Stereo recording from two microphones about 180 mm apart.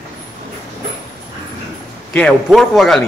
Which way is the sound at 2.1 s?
5° left (ahead or behind).